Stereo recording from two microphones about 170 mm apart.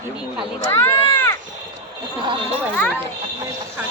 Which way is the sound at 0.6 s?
15° left (ahead or behind).